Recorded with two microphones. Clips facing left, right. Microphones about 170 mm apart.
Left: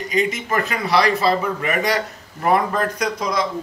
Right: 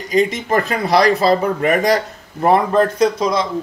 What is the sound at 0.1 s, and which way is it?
Speech, 35° right (ahead or behind).